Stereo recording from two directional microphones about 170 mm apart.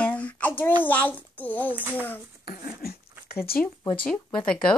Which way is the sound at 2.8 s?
65° left (ahead or behind).